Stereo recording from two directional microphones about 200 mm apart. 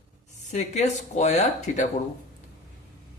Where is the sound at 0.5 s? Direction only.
35° left (ahead or behind).